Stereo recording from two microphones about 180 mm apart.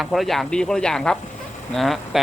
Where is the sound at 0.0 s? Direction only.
Centre (ahead or behind).